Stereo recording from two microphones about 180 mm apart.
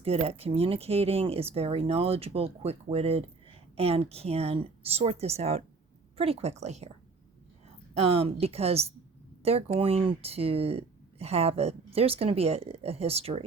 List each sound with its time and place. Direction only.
0.0 s speech: 35° right (ahead or behind)
7.9 s speech: 35° right (ahead or behind)